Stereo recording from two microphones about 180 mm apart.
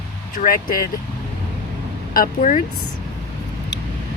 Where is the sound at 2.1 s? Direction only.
50° left (ahead or behind).